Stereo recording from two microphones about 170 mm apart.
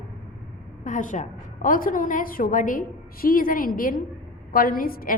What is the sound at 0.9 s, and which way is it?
A woman's voice, 50° left (ahead or behind).